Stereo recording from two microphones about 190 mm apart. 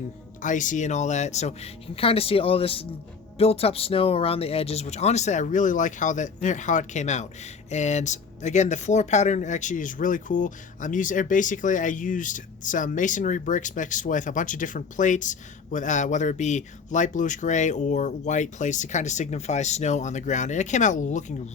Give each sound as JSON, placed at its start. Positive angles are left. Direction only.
{"t": 0.4, "sound": "speech", "side_deg": 40}